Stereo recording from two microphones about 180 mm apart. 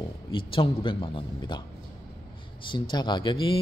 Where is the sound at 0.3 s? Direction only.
30° left (ahead or behind).